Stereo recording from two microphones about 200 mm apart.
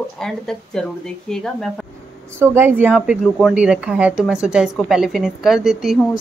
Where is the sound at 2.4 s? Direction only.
10° right (ahead or behind).